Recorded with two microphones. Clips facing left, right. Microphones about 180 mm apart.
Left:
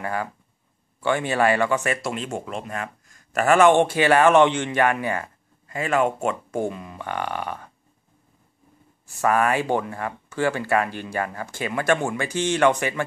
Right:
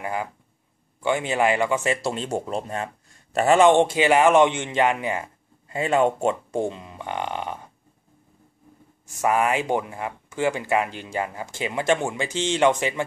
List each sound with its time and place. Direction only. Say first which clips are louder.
0.0 s speech: left 1 dB; 15° right (ahead or behind)
2.0 s speech: right 2 dB; 35° right (ahead or behind)
9.2 s speech: left 1 dB; 20° right (ahead or behind)